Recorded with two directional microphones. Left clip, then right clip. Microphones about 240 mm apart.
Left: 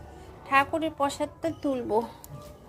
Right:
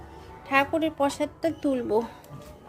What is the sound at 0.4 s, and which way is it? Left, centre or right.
A woman's voice, centre.